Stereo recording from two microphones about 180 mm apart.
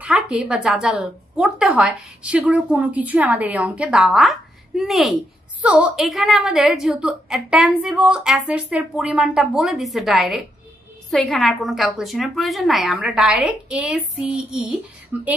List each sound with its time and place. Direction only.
0.0 s a woman's voice: 5° right (ahead or behind)